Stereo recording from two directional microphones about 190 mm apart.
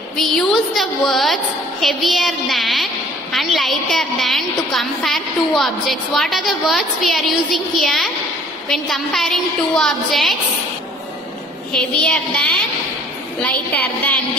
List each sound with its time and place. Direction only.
0.2 s a woman's voice: centre (ahead or behind)
11.7 s a woman's voice: 5° left (ahead or behind)